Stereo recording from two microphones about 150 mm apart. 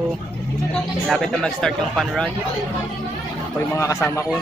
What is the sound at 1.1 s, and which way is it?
Speech, 5° left (ahead or behind).